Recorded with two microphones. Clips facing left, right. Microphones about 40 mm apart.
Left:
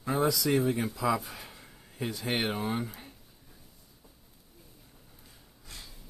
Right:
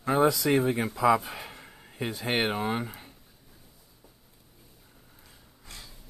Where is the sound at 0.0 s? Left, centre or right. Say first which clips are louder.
Right 4 dB; right.